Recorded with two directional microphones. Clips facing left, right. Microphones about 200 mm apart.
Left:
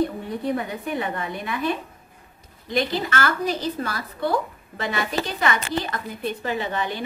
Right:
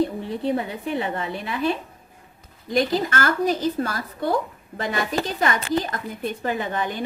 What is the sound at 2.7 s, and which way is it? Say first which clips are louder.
A woman's voice: right 2 dB; 40° right (ahead or behind).